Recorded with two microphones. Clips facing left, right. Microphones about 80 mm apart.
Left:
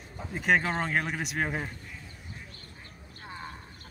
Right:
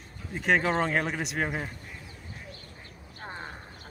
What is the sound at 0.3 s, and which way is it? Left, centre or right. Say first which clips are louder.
Speech: right 1 dB; centre.